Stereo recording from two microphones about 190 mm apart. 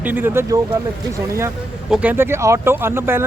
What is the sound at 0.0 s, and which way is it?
Speech, 10° right (ahead or behind).